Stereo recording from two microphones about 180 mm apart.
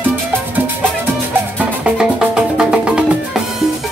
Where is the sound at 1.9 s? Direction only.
5° right (ahead or behind).